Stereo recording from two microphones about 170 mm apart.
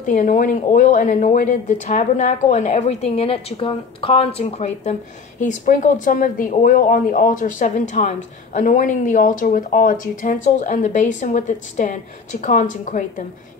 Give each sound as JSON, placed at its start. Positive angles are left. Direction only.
{"t": 0.0, "sound": "speech", "side_deg": 50}